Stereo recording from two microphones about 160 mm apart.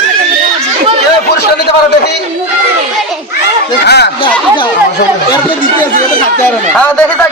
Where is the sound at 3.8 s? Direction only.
90° left.